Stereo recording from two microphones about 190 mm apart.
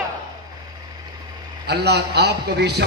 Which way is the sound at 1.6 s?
60° right (ahead or behind).